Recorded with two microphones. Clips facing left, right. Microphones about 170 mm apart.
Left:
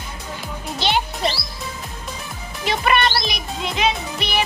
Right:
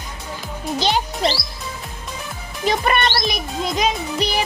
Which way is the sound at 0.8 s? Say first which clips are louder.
Right 1 dB; 40° right (ahead or behind).